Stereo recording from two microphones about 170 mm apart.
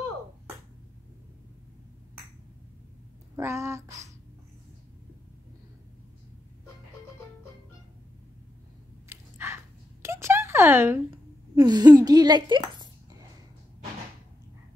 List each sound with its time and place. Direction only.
3.3 s speech: 15° right (ahead or behind)
9.1 s chewing: 15° right (ahead or behind)
10.0 s a sound: 15° right (ahead or behind)
11.5 s a woman's voice: 25° right (ahead or behind)